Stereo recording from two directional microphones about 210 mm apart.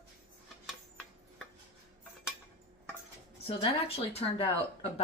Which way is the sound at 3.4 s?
30° left (ahead or behind).